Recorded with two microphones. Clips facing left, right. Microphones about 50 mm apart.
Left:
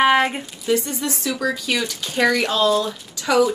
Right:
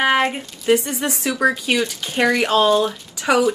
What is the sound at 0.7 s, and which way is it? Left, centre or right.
Speech, right.